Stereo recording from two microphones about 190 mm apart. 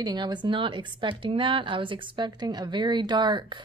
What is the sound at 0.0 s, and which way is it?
Speech, 20° right (ahead or behind).